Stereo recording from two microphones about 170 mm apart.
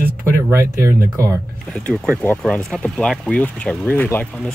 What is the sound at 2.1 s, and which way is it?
Speech, 10° left (ahead or behind).